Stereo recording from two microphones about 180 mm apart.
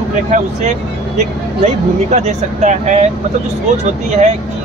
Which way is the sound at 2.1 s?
40° right (ahead or behind).